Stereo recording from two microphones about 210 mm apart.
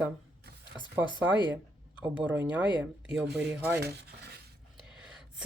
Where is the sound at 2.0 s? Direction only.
5° right (ahead or behind).